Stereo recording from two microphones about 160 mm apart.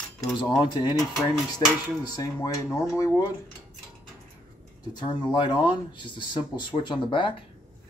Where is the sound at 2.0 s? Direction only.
25° left (ahead or behind).